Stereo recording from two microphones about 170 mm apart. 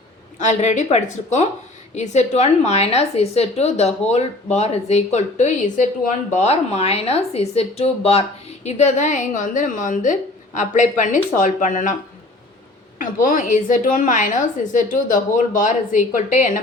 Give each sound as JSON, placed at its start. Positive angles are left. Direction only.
{"t": 0.3, "sound": "a woman's voice", "side_deg": 45}
{"t": 13.0, "sound": "speech", "side_deg": 50}